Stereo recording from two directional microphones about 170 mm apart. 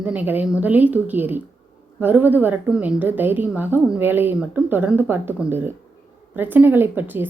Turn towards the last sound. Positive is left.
turn(degrees=-10)  # may be behind; listen again after turning